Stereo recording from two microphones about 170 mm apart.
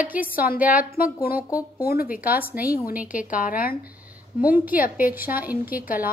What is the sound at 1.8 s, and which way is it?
Speech, 60° left (ahead or behind).